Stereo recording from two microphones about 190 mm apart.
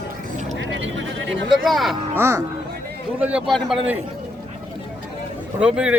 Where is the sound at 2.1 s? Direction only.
15° right (ahead or behind).